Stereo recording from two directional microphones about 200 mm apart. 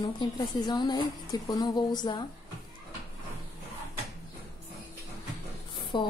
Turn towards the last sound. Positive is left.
turn(degrees=25)  # may be behind; listen again after turning